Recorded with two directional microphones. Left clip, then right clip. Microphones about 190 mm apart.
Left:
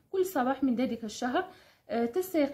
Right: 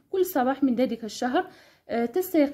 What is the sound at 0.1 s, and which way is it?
A woman's voice, 40° right (ahead or behind).